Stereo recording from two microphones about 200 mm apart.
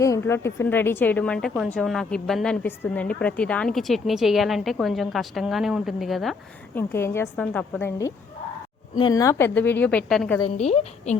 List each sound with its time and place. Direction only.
0.0 s a woman's voice: 15° left (ahead or behind)
6.7 s a woman's voice: 10° left (ahead or behind)
10.4 s a woman's voice: 30° left (ahead or behind)